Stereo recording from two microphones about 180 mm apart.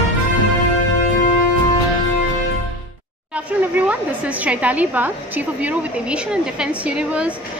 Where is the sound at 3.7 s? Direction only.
10° right (ahead or behind).